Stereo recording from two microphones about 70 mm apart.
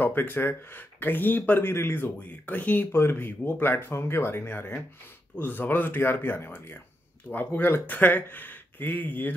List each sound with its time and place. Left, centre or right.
0.0 s speech: left
1.7 s speech: left